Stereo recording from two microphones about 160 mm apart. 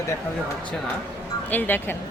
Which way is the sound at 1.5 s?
10° left (ahead or behind).